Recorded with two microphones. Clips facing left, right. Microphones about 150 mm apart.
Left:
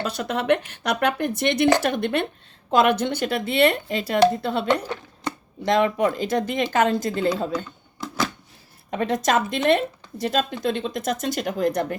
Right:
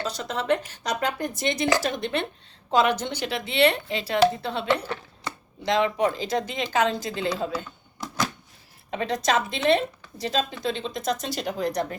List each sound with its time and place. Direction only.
0.0 s a woman's voice: 65° left (ahead or behind)
8.9 s a woman's voice: 50° left (ahead or behind)